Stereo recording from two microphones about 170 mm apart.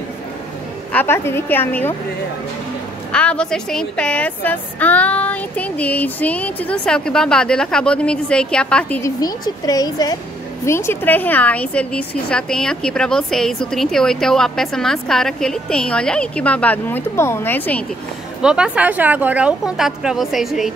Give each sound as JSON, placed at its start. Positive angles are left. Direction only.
{"t": 0.9, "sound": "a woman's voice", "side_deg": 15}
{"t": 3.1, "sound": "a woman's voice", "side_deg": 5}
{"t": 9.0, "sound": "a woman's voice", "side_deg": 20}
{"t": 18.4, "sound": "a woman's voice", "side_deg": -5}